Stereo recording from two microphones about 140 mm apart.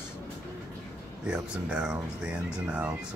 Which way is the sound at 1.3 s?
5° right (ahead or behind).